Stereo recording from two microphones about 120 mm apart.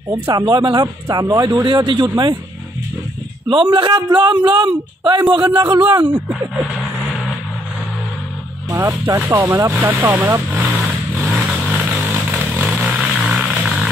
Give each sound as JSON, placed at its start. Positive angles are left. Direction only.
{"t": 0.5, "sound": "a man's voice", "side_deg": -40}
{"t": 1.6, "sound": "a man's voice", "side_deg": -40}
{"t": 3.4, "sound": "a man's voice", "side_deg": -45}
{"t": 9.0, "sound": "speech", "side_deg": -20}
{"t": 11.2, "sound": "vehicle", "side_deg": 0}
{"t": 11.7, "sound": "vehicle", "side_deg": -20}
{"t": 12.6, "sound": "vehicle", "side_deg": 0}